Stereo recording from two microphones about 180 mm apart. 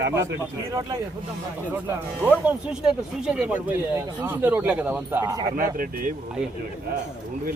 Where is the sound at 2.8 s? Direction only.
5° right (ahead or behind).